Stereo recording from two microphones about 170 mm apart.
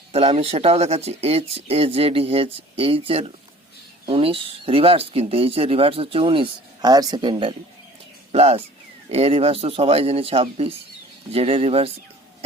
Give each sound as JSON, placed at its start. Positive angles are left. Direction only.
{"t": 0.1, "sound": "speech", "side_deg": -35}